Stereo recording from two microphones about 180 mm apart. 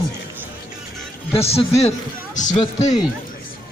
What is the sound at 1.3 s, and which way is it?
A man's voice, 35° left (ahead or behind).